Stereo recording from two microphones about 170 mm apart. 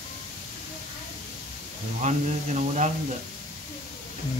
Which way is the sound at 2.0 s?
45° right (ahead or behind).